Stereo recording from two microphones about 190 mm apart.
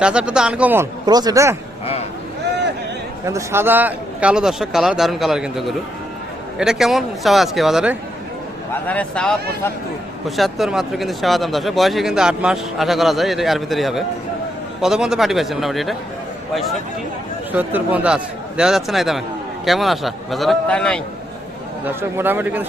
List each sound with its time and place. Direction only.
0.0 s speech: 5° right (ahead or behind)
1.0 s speech: 20° right (ahead or behind)
3.2 s speech: 15° right (ahead or behind)
17.5 s speech: 10° right (ahead or behind)
21.8 s a man's voice: 10° right (ahead or behind)